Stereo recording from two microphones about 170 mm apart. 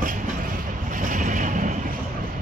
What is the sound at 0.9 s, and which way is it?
Boat, 50° right (ahead or behind).